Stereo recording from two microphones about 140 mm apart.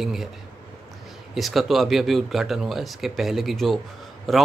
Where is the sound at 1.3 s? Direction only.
Centre (ahead or behind).